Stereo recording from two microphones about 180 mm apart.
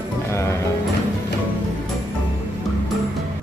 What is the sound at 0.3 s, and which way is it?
Music, 15° left (ahead or behind).